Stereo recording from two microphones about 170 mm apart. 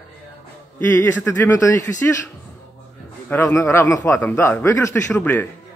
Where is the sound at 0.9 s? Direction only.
10° left (ahead or behind).